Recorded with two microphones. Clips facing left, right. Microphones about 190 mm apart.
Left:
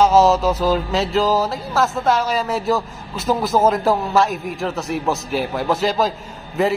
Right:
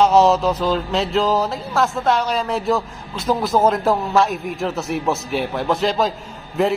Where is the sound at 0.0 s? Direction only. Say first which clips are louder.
Even; centre (ahead or behind).